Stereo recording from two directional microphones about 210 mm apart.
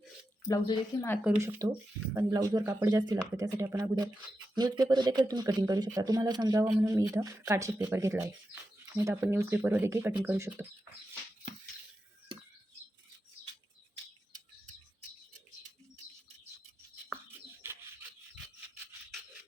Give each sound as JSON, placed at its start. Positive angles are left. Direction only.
{"t": 0.4, "sound": "speech", "side_deg": 15}
{"t": 1.3, "sound": "speech", "side_deg": -15}
{"t": 17.6, "sound": "bird", "side_deg": -10}